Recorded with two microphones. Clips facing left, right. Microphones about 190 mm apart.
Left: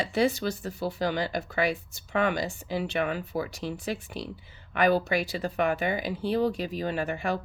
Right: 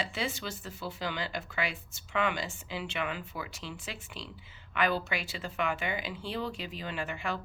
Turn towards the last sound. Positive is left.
turn(degrees=40)  # may be behind; listen again after turning